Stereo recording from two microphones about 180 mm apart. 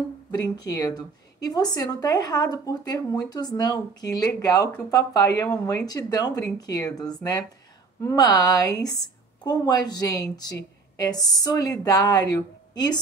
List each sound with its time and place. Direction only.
0.4 s a woman's voice: 20° left (ahead or behind)